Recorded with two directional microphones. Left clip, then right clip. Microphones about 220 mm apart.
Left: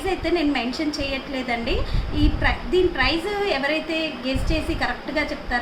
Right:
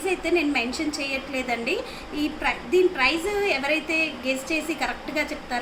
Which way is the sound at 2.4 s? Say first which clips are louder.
Even; 10° left (ahead or behind).